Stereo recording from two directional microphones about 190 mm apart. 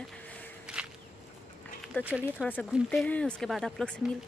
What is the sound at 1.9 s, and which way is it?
A woman's voice, 10° left (ahead or behind).